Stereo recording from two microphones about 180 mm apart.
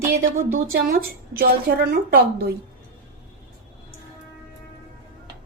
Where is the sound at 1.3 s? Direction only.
60° right (ahead or behind).